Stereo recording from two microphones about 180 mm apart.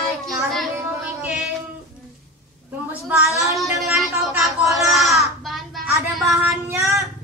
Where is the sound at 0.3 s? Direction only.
Centre (ahead or behind).